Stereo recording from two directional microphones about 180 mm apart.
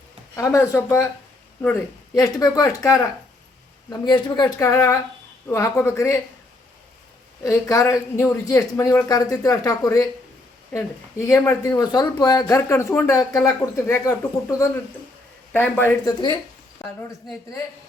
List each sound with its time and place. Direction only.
0.3 s speech: 15° left (ahead or behind)
7.4 s speech: 20° left (ahead or behind)
11.3 s a woman's voice: 15° left (ahead or behind)